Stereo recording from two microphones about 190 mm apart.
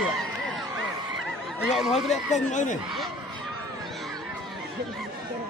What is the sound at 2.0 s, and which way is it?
Speech, centre (ahead or behind).